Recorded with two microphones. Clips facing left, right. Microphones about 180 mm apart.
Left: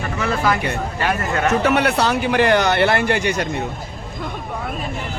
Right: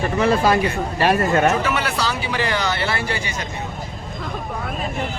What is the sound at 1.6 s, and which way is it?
Speech, 60° left (ahead or behind).